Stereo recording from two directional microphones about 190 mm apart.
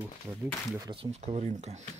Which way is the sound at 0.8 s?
25° right (ahead or behind).